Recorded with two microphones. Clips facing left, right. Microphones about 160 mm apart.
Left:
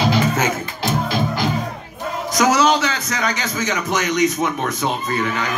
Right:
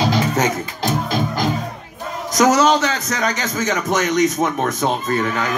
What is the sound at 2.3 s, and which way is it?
A man's voice, 45° right (ahead or behind).